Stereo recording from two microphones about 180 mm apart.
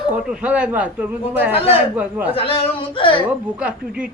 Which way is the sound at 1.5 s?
35° left (ahead or behind).